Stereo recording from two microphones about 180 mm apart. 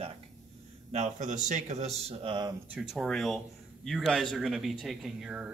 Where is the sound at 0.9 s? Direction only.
40° right (ahead or behind).